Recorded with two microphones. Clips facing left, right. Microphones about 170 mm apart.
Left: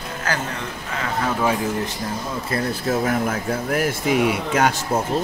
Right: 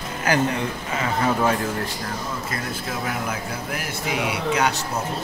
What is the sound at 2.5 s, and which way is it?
Speech, 45° left (ahead or behind).